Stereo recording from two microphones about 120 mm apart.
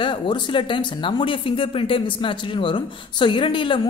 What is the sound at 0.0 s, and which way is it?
Speech, 40° left (ahead or behind).